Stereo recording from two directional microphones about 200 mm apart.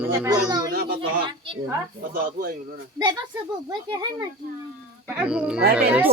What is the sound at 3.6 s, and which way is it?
Speech, 20° right (ahead or behind).